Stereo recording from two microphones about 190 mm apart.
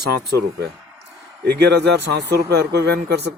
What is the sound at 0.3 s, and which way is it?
Speech, 60° right (ahead or behind).